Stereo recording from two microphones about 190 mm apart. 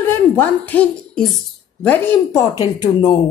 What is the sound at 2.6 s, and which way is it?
Speech, 20° left (ahead or behind).